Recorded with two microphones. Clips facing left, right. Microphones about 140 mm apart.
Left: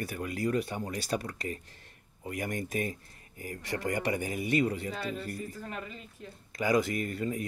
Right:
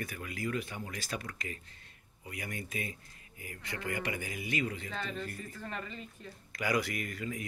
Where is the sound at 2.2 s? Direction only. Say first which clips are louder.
Left 7 dB; 45° left (ahead or behind).